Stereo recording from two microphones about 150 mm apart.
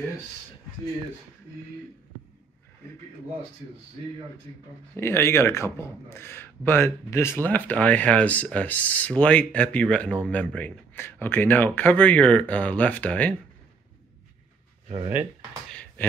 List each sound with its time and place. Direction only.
4.9 s speech: 15° left (ahead or behind)
14.9 s speech: 40° right (ahead or behind)
15.7 s a sound: 10° left (ahead or behind)